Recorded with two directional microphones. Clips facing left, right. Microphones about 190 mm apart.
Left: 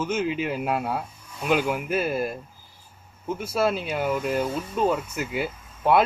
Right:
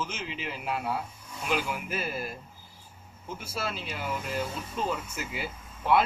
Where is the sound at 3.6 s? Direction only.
50° left (ahead or behind).